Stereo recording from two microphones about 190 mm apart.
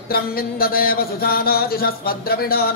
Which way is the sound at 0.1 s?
50° left (ahead or behind).